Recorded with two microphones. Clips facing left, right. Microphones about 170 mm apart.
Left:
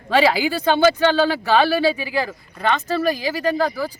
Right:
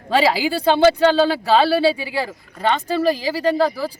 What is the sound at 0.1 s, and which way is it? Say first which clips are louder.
A man's voice: even; 30° right (ahead or behind).